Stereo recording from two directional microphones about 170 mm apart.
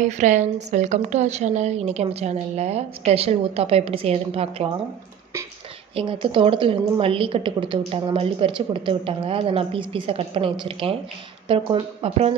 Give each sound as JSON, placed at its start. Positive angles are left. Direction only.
{"t": 0.0, "sound": "a woman's voice", "side_deg": -45}
{"t": 5.9, "sound": "a woman's voice", "side_deg": -30}